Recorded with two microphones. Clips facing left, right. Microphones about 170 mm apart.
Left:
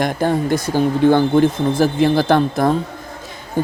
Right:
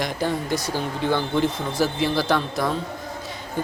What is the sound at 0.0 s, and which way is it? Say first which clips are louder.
Speech: left 7 dB; 55° left (ahead or behind).